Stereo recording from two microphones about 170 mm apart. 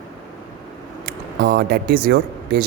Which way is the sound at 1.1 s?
70° right (ahead or behind).